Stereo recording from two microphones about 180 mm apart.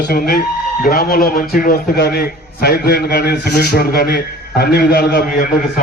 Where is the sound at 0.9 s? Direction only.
55° left (ahead or behind).